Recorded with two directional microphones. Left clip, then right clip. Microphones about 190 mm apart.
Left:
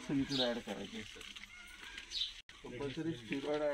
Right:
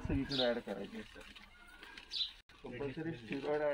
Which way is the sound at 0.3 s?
10° right (ahead or behind).